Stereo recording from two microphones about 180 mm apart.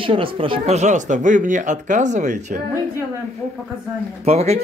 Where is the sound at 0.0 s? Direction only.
30° right (ahead or behind).